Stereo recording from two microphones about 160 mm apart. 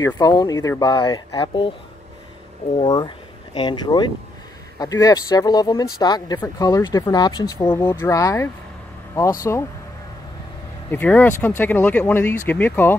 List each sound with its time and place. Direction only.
0.0 s speech: 25° left (ahead or behind)
2.8 s speech: 25° left (ahead or behind)
10.9 s speech: 10° left (ahead or behind)